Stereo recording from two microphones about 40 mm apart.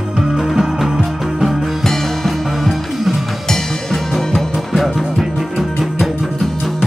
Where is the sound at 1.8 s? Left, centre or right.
Centre.